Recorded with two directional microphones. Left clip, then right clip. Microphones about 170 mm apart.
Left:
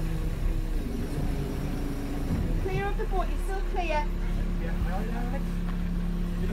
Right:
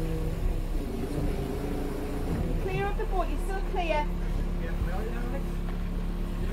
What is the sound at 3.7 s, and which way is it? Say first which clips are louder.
Speech: right 1 dB; 45° right (ahead or behind).